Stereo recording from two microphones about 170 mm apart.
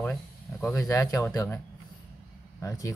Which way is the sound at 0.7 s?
20° left (ahead or behind).